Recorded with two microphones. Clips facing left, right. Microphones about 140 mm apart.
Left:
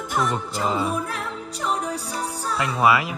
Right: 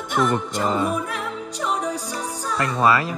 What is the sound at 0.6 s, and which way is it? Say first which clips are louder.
Music: left 1 dB; 5° left (ahead or behind).